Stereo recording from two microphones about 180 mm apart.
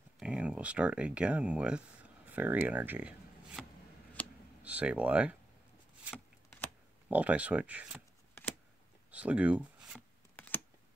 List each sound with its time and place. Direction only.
0.2 s speech: 5° right (ahead or behind)
4.6 s speech: 5° right (ahead or behind)
6.1 s shuffling cards: 10° left (ahead or behind)
7.1 s speech: 10° right (ahead or behind)
9.1 s speech: 5° right (ahead or behind)